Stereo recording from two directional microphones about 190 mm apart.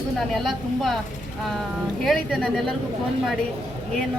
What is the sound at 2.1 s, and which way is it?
Speech, centre (ahead or behind).